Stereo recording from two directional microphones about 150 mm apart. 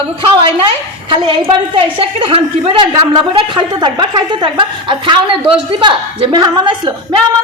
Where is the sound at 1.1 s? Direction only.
35° right (ahead or behind).